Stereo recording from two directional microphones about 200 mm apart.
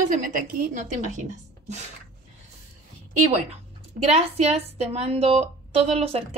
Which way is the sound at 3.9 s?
30° right (ahead or behind).